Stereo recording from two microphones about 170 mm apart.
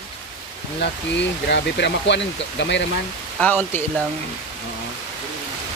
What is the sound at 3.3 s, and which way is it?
Speech, 10° left (ahead or behind).